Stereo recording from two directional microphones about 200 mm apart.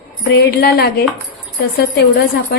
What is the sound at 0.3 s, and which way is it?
A woman's voice, 55° left (ahead or behind).